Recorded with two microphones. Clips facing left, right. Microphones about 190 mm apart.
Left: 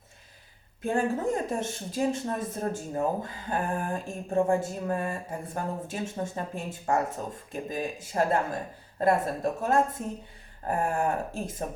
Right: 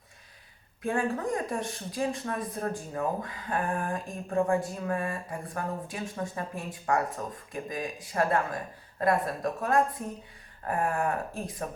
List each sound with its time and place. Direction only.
0.8 s a woman's voice: 25° left (ahead or behind)